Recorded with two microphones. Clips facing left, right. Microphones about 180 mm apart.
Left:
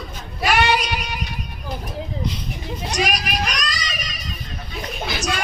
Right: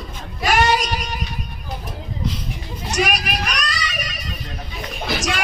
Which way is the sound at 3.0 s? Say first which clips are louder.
Right 2 dB; 60° right (ahead or behind).